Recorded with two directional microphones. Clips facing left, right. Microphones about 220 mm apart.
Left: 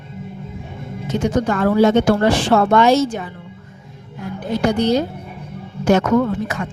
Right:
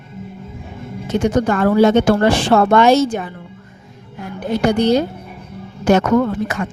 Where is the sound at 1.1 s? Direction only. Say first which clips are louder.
Right 2 dB; 60° right (ahead or behind).